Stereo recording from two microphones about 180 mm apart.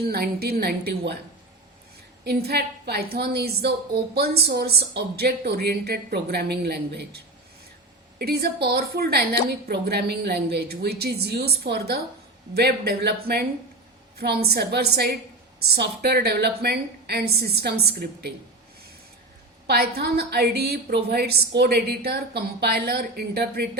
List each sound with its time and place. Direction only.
0.0 s a woman's voice: 60° right (ahead or behind)
2.2 s a woman's voice: 65° right (ahead or behind)
8.2 s a woman's voice: 60° right (ahead or behind)
19.6 s a woman's voice: 60° right (ahead or behind)